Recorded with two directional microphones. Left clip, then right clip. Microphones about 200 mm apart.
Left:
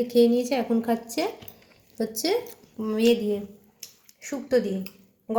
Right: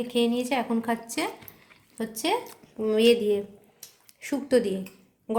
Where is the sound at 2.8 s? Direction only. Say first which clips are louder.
Right 2 dB; 15° right (ahead or behind).